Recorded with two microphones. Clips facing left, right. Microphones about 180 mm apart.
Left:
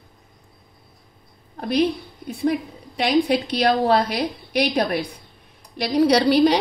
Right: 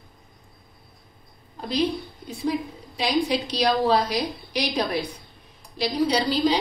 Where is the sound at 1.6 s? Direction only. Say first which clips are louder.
Left 4 dB; 60° left (ahead or behind).